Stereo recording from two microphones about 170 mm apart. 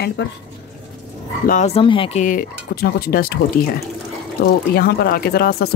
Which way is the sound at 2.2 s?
50° left (ahead or behind).